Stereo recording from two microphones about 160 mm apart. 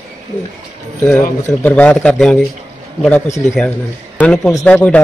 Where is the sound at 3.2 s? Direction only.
45° left (ahead or behind).